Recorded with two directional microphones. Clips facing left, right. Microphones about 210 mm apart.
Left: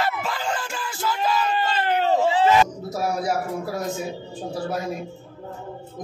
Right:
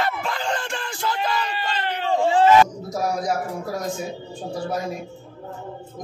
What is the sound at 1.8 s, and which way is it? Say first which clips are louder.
Speech: left 5 dB; 45° left (ahead or behind).